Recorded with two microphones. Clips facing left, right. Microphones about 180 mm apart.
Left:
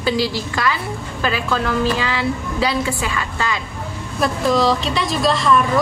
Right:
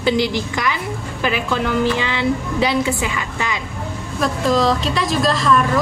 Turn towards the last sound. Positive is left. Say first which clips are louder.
# even
turn(degrees=0)  # may be behind; listen again after turning